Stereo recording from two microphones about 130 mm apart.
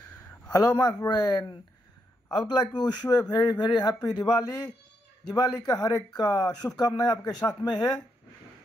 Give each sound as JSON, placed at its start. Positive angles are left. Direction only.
{"t": 0.5, "sound": "a man's voice", "side_deg": 25}